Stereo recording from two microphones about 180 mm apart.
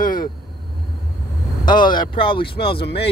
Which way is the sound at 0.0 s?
50° left (ahead or behind).